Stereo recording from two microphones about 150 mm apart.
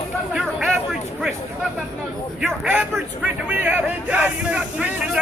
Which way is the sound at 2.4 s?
10° right (ahead or behind).